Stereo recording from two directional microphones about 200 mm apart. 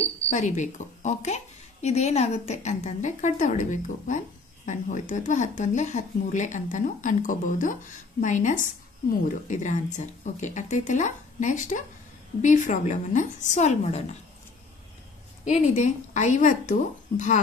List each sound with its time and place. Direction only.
0.3 s speech: 40° left (ahead or behind)
15.4 s speech: 35° left (ahead or behind)